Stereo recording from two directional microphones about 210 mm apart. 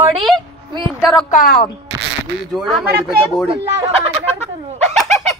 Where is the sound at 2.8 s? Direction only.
50° right (ahead or behind).